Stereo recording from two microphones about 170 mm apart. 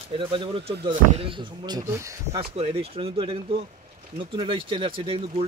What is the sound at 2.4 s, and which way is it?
Speech, 35° right (ahead or behind).